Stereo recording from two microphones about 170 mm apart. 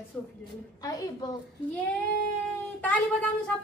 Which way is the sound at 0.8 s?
20° left (ahead or behind).